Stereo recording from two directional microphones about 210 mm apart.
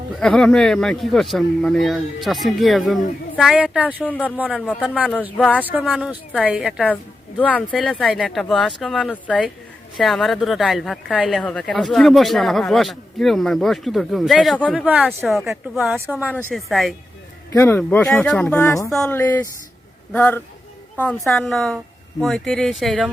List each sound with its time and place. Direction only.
0.2 s speech: 5° left (ahead or behind)
4.0 s speech: 5° left (ahead or behind)
18.9 s speech: 5° left (ahead or behind)
19.2 s speech: 15° left (ahead or behind); by 23.0 s centre (ahead or behind)